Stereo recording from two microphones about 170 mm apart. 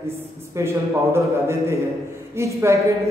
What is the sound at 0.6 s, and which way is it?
Speech, 15° right (ahead or behind).